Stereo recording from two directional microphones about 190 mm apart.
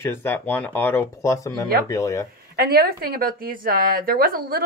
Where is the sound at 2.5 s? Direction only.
55° right (ahead or behind).